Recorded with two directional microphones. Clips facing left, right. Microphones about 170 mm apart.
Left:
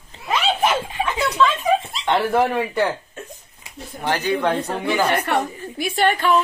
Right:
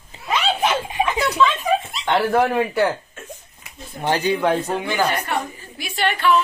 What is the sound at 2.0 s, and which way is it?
Speech, centre (ahead or behind).